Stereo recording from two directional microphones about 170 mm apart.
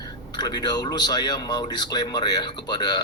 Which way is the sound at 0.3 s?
25° left (ahead or behind).